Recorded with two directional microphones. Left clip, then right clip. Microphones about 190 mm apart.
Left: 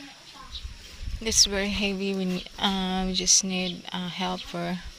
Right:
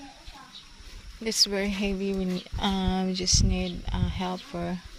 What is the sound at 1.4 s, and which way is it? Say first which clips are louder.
A woman's voice: left 1 dB; 15° right (ahead or behind).